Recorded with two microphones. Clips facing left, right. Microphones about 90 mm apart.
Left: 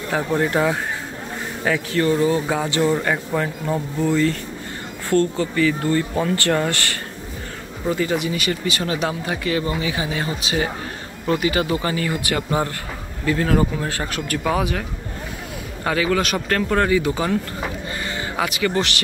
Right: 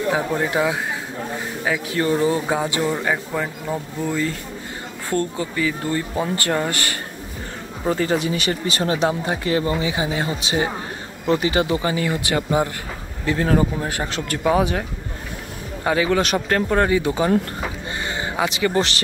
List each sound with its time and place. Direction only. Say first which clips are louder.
0.1 s speech: left 4 dB; 10° right (ahead or behind)
2.0 s speech: left 1 dB; 25° right (ahead or behind)
2.8 s speech: left 2 dB; 10° right (ahead or behind)
5.1 s speech: left 4 dB; 20° right (ahead or behind)
7.8 s speech: right 1 dB; 35° right (ahead or behind)
17.9 s music: right 1 dB; 25° right (ahead or behind)
18.3 s speech: right 1 dB; 20° right (ahead or behind)